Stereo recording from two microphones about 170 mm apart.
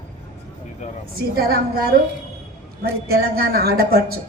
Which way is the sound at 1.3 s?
65° right (ahead or behind).